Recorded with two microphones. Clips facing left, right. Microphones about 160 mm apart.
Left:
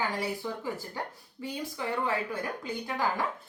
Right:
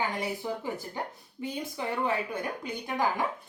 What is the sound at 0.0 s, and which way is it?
A woman's voice, 20° right (ahead or behind).